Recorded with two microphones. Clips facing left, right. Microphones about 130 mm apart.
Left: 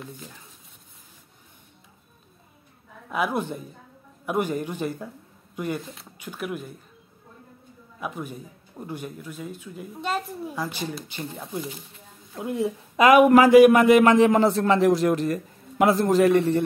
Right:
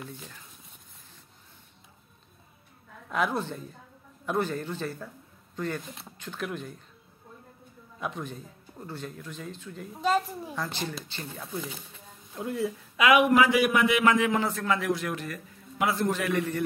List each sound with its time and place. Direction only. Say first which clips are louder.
3.1 s speech: left 3 dB; 10° left (ahead or behind)
8.0 s a woman's voice: left 2 dB; 10° left (ahead or behind)
12.9 s a man's voice: left 7 dB; 40° left (ahead or behind)